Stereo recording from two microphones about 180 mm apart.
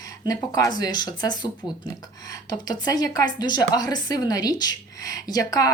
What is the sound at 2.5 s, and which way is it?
Speech, 20° left (ahead or behind).